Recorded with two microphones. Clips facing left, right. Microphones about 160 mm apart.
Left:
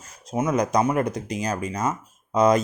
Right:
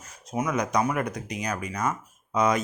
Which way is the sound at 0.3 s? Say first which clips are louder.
Left 4 dB; 25° left (ahead or behind).